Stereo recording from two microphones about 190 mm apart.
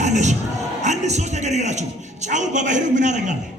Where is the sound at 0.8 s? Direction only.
40° right (ahead or behind).